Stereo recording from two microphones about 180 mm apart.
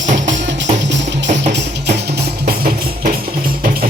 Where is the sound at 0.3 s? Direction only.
85° right.